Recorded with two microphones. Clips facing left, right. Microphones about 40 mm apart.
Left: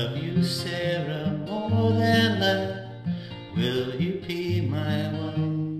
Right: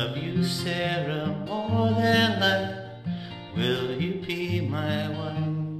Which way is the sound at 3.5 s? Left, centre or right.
Centre.